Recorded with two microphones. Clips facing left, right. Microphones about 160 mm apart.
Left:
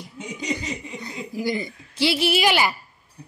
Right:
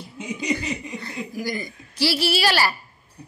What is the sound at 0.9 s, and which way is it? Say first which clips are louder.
A woman's voice: even; 20° left (ahead or behind).